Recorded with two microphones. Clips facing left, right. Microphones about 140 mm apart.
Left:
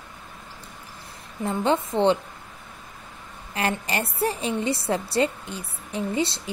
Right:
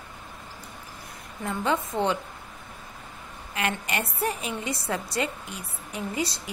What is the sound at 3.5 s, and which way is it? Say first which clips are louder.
A woman's voice: left 3 dB; 35° left (ahead or behind).